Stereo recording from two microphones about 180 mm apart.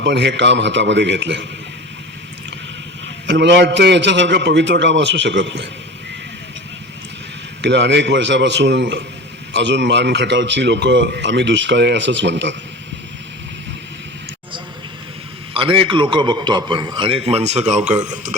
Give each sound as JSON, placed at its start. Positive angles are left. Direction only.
{"t": 0.0, "sound": "a man's voice", "side_deg": -75}
{"t": 3.2, "sound": "a man's voice", "side_deg": -75}
{"t": 7.6, "sound": "a man's voice", "side_deg": -75}
{"t": 15.5, "sound": "a man's voice", "side_deg": -30}